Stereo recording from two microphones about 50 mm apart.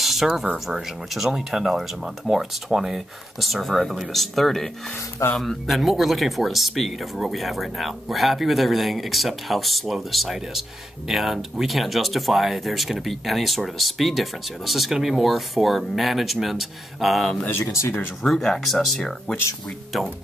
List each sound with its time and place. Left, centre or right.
0.0 s a sound: centre
0.7 s speech: centre
17.8 s speech: left
18.2 s speech: centre